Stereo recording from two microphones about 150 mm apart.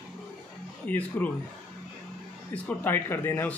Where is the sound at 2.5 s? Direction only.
15° left (ahead or behind).